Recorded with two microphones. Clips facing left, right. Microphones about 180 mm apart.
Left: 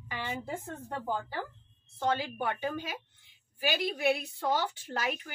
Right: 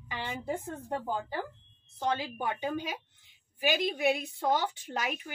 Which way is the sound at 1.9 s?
20° right (ahead or behind).